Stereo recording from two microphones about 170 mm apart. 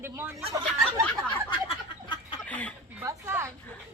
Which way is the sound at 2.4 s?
10° left (ahead or behind).